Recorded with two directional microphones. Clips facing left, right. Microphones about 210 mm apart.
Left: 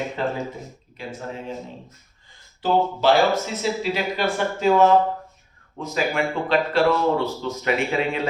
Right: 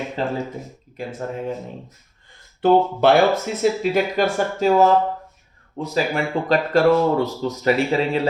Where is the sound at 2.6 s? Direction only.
60° right (ahead or behind).